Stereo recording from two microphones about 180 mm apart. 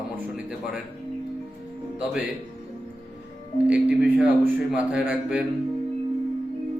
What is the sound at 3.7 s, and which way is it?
A man's voice, 5° right (ahead or behind).